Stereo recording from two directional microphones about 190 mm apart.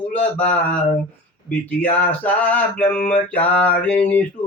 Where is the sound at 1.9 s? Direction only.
10° left (ahead or behind).